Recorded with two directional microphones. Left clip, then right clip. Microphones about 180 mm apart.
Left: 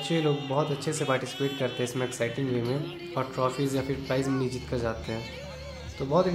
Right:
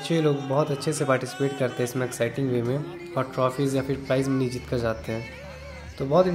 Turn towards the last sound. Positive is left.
turn(degrees=-20)  # may be behind; listen again after turning